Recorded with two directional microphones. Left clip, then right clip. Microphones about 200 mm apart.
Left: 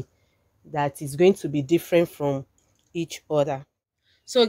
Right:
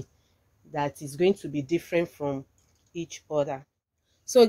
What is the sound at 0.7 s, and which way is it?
Speech, 35° left (ahead or behind).